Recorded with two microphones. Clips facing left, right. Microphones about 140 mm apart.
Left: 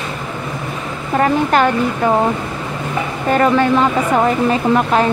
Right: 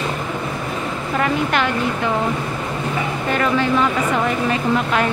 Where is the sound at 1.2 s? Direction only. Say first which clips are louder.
Left 6 dB; 40° left (ahead or behind).